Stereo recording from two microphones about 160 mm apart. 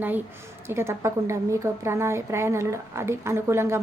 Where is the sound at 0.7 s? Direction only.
15° right (ahead or behind).